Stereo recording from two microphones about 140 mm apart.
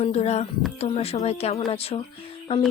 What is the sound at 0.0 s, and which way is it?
Speech, 50° left (ahead or behind).